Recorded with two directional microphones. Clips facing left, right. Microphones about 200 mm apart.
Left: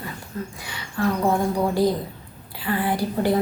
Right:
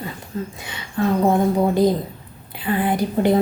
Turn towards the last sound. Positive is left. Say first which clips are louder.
# right 4 dB
turn(degrees=-20)  # may be behind; listen again after turning